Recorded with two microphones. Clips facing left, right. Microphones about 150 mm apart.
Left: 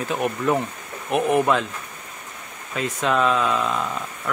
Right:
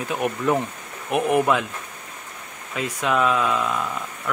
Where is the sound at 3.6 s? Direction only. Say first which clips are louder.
Left 1 dB; 20° left (ahead or behind).